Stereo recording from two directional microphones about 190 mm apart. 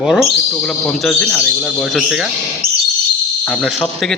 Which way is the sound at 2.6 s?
50° right (ahead or behind).